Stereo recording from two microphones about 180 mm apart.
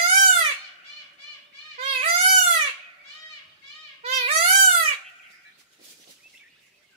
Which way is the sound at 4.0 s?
35° right (ahead or behind).